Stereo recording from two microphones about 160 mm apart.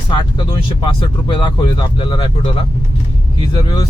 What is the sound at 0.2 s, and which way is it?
Speech, 30° left (ahead or behind).